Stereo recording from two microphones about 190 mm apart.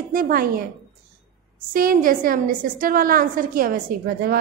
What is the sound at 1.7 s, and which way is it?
A woman's voice, 50° right (ahead or behind).